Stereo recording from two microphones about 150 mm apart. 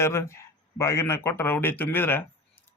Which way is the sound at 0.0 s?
20° left (ahead or behind).